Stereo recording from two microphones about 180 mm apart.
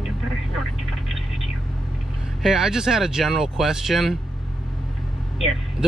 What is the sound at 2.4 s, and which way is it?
Speech, 5° right (ahead or behind).